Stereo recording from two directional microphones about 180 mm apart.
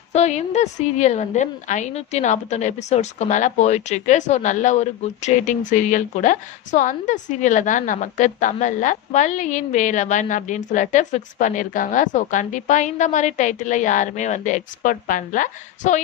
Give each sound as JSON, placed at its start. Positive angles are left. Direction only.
{"t": 0.1, "sound": "a woman's voice", "side_deg": 40}